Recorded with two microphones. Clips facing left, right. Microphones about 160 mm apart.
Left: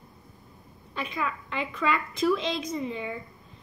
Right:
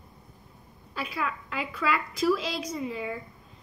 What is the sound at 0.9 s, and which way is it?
A woman's voice, 5° right (ahead or behind).